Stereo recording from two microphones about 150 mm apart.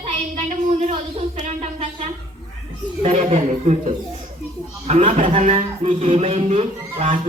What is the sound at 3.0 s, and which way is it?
A man's voice, 45° right (ahead or behind).